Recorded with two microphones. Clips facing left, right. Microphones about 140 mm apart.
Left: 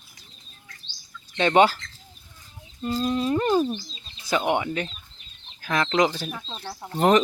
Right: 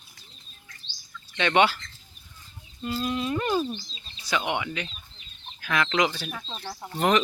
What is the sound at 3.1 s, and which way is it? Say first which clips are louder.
Speech: left 5 dB; 30° left (ahead or behind).